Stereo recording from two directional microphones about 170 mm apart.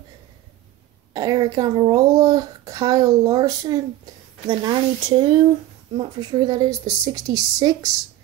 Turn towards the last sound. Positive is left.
turn(degrees=-20)  # may be behind; listen again after turning